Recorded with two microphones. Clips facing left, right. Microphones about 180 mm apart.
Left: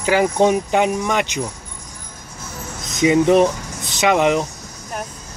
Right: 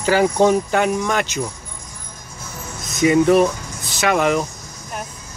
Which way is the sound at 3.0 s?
20° left (ahead or behind).